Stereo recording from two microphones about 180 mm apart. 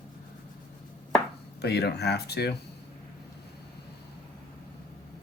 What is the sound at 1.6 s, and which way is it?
Speech, 65° left (ahead or behind).